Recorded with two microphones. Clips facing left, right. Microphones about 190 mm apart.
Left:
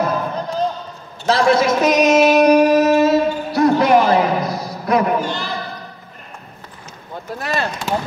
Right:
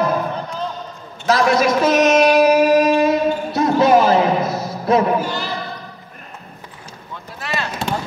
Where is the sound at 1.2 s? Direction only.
30° left (ahead or behind); by 5.1 s 25° right (ahead or behind).